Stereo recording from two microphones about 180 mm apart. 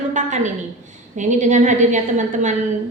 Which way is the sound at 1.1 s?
40° right (ahead or behind).